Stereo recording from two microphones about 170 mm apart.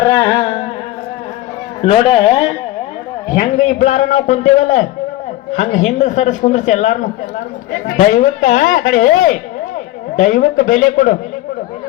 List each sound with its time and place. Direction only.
0.0 s carnatic music: 20° left (ahead or behind)
1.8 s a man's voice: 30° left (ahead or behind)
3.3 s a man's voice: 45° left (ahead or behind)
7.9 s a man's voice: 50° left (ahead or behind)